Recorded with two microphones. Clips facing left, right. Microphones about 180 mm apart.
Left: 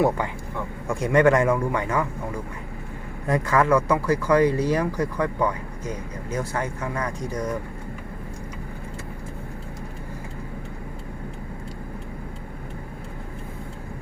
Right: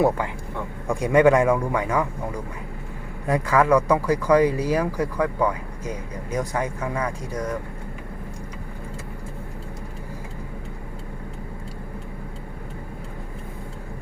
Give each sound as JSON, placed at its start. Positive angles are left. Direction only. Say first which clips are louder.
{"t": 0.9, "sound": "speech", "louder": "right 2 dB", "side_deg": -15}
{"t": 3.2, "sound": "speech", "louder": "right 1 dB", "side_deg": -10}